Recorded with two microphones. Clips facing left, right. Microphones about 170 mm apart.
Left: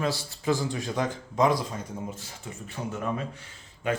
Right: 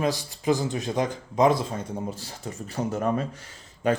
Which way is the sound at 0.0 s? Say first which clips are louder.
Right 3 dB; 15° right (ahead or behind).